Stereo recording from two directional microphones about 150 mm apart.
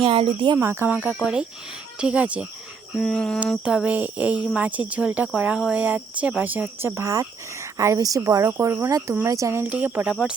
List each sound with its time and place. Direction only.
0.0 s speech: 35° right (ahead or behind)
0.6 s speech: 15° right (ahead or behind); by 3.4 s 5° left (ahead or behind)
3.6 s speech: 5° right (ahead or behind)